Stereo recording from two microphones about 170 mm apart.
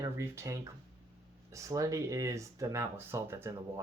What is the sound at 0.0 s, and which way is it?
Speech, 15° right (ahead or behind).